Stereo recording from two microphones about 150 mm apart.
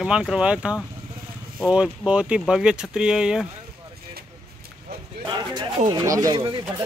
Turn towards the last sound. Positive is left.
turn(degrees=-25)  # may be behind; listen again after turning